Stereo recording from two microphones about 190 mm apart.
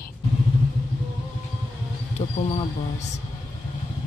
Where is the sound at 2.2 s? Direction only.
30° left (ahead or behind).